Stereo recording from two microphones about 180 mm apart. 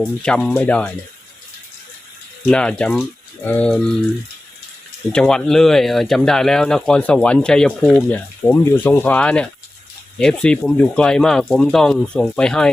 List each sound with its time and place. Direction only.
0.0 s speech: 5° left (ahead or behind)
2.5 s speech: 5° left (ahead or behind)
5.1 s speech: 5° left (ahead or behind)